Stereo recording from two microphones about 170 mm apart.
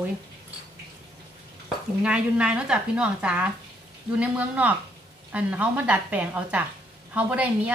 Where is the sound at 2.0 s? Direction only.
5° right (ahead or behind).